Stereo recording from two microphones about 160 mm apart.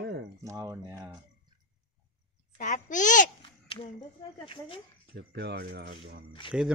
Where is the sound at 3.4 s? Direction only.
30° left (ahead or behind).